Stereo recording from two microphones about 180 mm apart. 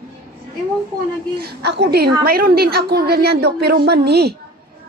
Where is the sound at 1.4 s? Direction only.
65° right (ahead or behind).